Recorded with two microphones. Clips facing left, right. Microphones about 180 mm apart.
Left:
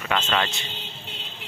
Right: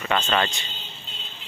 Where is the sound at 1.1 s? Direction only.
70° left (ahead or behind).